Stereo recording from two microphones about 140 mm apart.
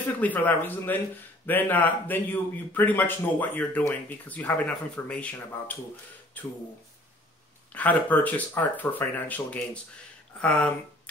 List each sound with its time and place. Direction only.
0.2 s speech: 10° left (ahead or behind)
7.7 s speech: 10° left (ahead or behind)